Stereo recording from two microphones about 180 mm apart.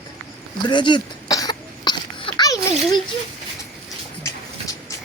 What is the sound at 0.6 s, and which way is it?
Cough, 25° left (ahead or behind).